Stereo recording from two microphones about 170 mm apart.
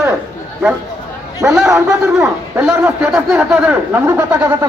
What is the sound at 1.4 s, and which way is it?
Speech, 15° right (ahead or behind).